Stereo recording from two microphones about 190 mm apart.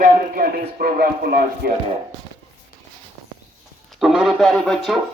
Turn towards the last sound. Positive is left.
turn(degrees=0)  # may be behind; listen again after turning